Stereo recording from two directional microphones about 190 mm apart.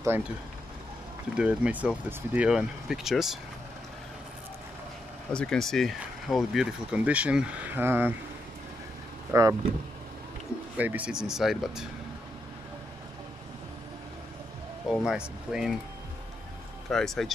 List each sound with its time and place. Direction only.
1.3 s speech: 5° right (ahead or behind)
5.3 s speech: 5° left (ahead or behind); by 8.1 s 10° right (ahead or behind)
9.3 s speech: 15° right (ahead or behind)
10.8 s speech: 10° right (ahead or behind)
14.9 s speech: 5° right (ahead or behind)
16.9 s speech: centre (ahead or behind)